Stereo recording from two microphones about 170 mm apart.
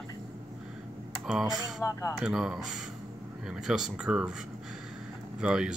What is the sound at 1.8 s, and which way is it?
Speech, 20° left (ahead or behind).